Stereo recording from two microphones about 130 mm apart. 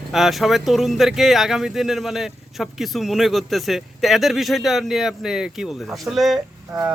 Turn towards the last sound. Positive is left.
turn(degrees=-30)  # may be behind; listen again after turning